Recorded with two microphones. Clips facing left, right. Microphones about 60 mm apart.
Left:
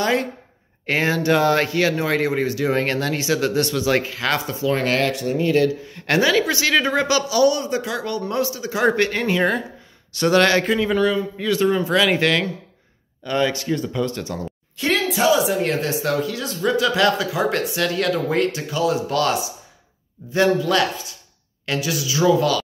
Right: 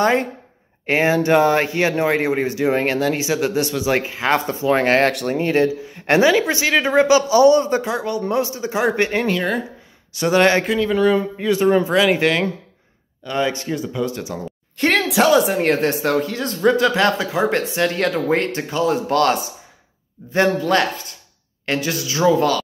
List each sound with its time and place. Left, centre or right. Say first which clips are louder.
0.0 s speech: right 3 dB; right
0.8 s speech: right 3 dB; centre; by 5.1 s right
5.1 s speech: right 1 dB; right
5.4 s speech: even; right; by 12.4 s centre
13.2 s a man's voice: left 1 dB; centre
13.5 s speech: even; right
13.7 s speech: even; centre
14.8 s a sound: right 3 dB; right
15.0 s speech: right 2 dB; right